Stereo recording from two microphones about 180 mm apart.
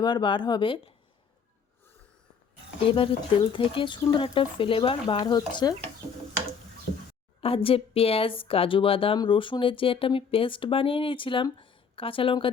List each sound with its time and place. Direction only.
0.0 s speech: 25° left (ahead or behind)
2.9 s speech: 30° left (ahead or behind)
7.4 s speech: 30° left (ahead or behind)